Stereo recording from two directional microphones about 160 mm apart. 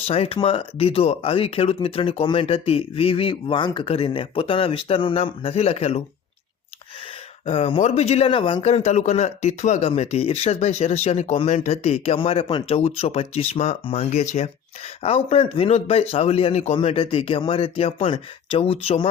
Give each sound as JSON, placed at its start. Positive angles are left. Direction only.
{"t": 0.1, "sound": "speech", "side_deg": 35}
{"t": 7.4, "sound": "speech", "side_deg": 40}